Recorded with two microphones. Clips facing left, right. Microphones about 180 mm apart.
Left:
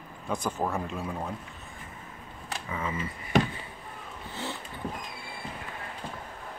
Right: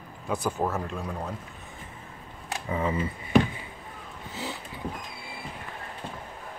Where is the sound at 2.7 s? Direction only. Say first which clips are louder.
Right 6 dB; 35° right (ahead or behind).